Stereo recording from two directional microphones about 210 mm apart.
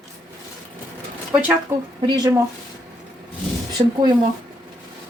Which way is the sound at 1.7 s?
15° right (ahead or behind).